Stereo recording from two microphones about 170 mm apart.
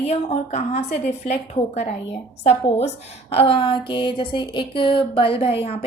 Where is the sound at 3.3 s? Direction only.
35° left (ahead or behind).